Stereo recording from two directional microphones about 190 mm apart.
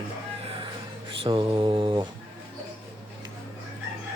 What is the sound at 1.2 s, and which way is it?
Speech, 25° right (ahead or behind).